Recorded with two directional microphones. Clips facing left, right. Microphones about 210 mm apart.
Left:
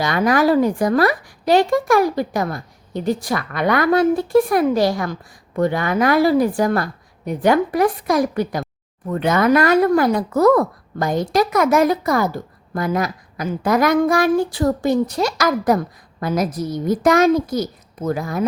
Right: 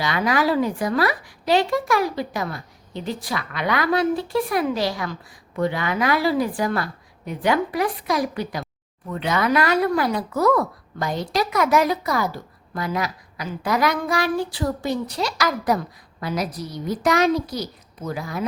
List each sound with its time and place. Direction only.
0.0 s speech: 45° left (ahead or behind)